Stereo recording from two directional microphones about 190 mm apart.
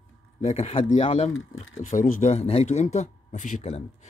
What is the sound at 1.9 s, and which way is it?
Speech, 45° left (ahead or behind).